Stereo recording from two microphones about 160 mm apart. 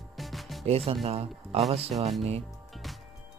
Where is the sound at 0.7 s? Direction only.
40° right (ahead or behind).